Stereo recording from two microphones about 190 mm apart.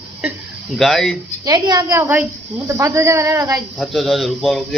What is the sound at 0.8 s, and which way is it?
Speech, centre (ahead or behind).